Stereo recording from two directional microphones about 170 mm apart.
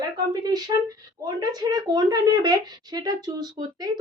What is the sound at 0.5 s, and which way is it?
Speech, 20° right (ahead or behind).